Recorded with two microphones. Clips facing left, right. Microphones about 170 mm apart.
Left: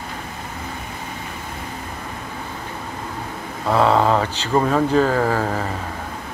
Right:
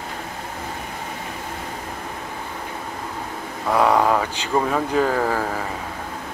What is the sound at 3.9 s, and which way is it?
Speech, 20° left (ahead or behind).